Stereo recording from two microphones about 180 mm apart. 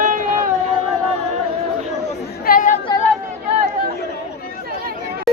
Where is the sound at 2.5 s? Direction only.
45° left (ahead or behind).